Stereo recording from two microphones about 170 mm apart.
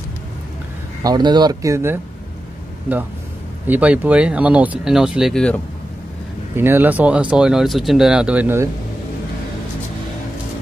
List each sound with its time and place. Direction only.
1.0 s speech: 25° right (ahead or behind)
3.6 s speech: 10° right (ahead or behind)
6.5 s speech: 15° right (ahead or behind)